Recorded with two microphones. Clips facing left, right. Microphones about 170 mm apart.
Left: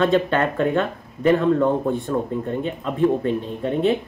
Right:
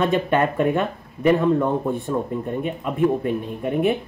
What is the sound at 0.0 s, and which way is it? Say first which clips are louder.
Speech: left 1 dB; 15° right (ahead or behind).